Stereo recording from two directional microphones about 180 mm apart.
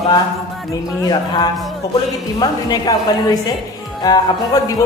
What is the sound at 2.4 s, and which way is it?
A man's voice, 20° left (ahead or behind).